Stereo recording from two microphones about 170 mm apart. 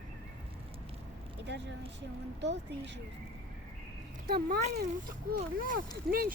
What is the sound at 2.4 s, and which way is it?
Speech, 90° right.